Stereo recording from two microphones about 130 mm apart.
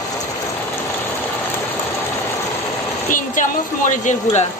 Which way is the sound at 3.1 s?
85° left.